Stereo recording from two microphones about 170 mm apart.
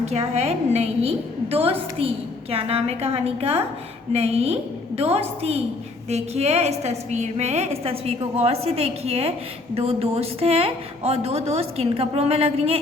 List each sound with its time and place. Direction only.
0.0 s a woman's voice: 40° right (ahead or behind)